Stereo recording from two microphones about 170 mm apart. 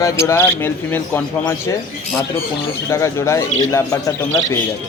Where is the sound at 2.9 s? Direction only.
15° left (ahead or behind).